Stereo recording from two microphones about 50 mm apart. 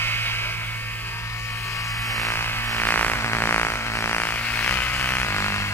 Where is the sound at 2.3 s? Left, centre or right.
Left.